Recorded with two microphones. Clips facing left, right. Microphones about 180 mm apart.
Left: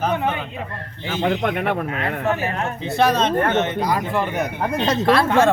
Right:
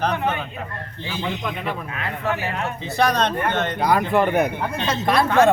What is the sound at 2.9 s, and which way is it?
Speech, 5° left (ahead or behind).